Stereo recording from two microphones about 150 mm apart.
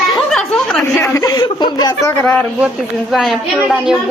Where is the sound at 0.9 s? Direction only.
15° left (ahead or behind).